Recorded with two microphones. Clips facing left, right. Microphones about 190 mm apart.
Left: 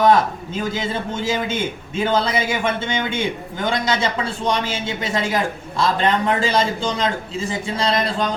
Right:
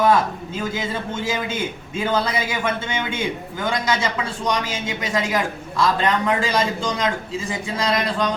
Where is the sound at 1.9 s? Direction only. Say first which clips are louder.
Left 2 dB; 25° left (ahead or behind).